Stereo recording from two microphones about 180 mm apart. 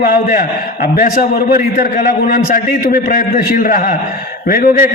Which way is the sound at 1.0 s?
50° left (ahead or behind).